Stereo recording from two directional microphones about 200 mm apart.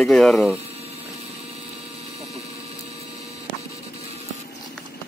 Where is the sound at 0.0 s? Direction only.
5° left (ahead or behind).